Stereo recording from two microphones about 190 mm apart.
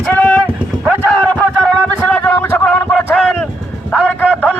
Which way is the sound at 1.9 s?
10° left (ahead or behind).